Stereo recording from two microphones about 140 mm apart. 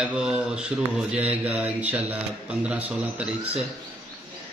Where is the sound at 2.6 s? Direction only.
10° right (ahead or behind).